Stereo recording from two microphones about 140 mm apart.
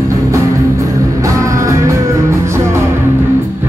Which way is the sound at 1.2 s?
20° right (ahead or behind).